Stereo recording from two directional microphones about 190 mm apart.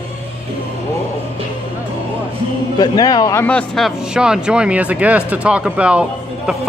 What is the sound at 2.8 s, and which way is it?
Speech, 20° left (ahead or behind).